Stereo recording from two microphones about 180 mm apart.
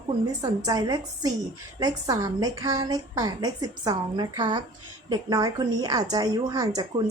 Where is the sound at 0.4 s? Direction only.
20° right (ahead or behind).